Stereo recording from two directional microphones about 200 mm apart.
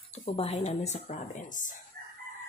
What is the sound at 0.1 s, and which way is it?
Speech, 30° left (ahead or behind).